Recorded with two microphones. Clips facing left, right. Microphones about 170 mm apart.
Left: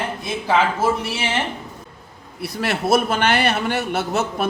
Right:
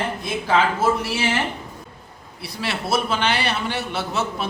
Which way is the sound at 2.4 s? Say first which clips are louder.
Left 5 dB; 50° left (ahead or behind).